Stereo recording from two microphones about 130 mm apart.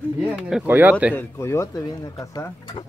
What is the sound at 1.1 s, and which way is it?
Speech, 20° left (ahead or behind).